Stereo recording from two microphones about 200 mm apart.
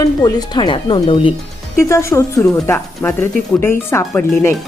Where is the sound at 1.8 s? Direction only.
15° left (ahead or behind).